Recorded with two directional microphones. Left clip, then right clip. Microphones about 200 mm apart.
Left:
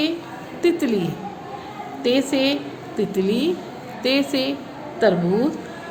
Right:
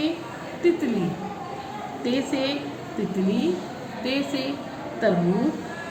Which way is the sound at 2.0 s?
55° left (ahead or behind).